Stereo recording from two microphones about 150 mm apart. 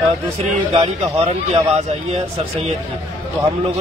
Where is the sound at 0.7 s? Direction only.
30° right (ahead or behind).